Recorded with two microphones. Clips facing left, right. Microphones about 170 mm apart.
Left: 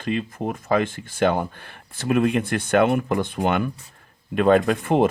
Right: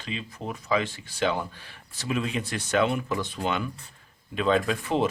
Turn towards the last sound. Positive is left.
turn(degrees=55)  # may be behind; listen again after turning